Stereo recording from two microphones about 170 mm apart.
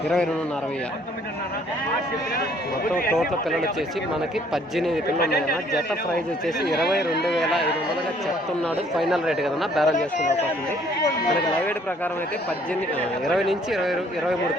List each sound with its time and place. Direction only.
4.5 s speech: centre (ahead or behind)
5.2 s speech: 70° left (ahead or behind)
6.6 s speech: 70° left (ahead or behind)
7.3 s speech: centre (ahead or behind)
9.0 s speech: centre (ahead or behind)
9.9 s speech: 45° left (ahead or behind)
13.2 s speech: centre (ahead or behind)